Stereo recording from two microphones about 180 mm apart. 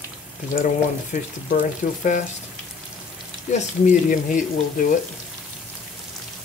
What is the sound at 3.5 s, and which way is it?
Speech, 40° left (ahead or behind).